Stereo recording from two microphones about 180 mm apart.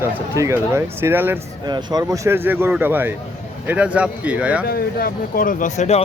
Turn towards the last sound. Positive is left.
turn(degrees=40)  # may be behind; listen again after turning